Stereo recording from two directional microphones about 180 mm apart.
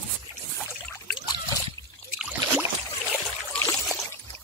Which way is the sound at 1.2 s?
20° left (ahead or behind).